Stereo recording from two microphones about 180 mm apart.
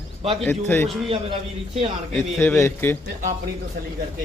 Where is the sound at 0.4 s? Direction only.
10° left (ahead or behind).